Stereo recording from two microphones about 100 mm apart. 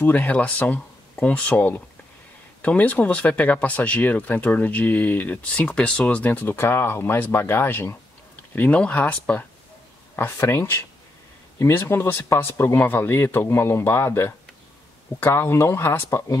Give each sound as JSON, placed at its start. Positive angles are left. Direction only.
{"t": 0.0, "sound": "speech", "side_deg": 15}